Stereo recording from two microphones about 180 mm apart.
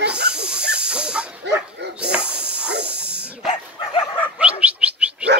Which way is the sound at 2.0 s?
5° right (ahead or behind).